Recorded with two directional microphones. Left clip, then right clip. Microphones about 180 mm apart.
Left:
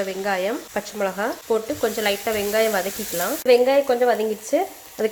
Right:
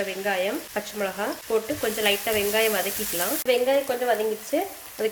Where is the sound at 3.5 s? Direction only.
40° left (ahead or behind).